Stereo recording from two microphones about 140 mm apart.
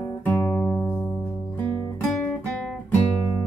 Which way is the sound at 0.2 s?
20° left (ahead or behind).